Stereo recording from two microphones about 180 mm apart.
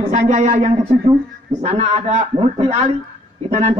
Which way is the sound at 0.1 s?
45° right (ahead or behind).